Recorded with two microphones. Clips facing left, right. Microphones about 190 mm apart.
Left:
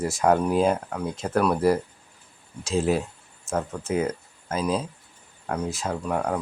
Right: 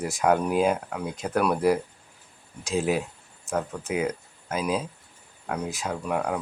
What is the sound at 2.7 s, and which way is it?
Speech, 10° right (ahead or behind).